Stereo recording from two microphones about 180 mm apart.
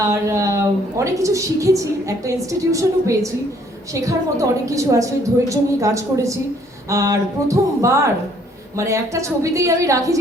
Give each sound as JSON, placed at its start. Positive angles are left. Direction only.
{"t": 0.1, "sound": "a woman's voice", "side_deg": -15}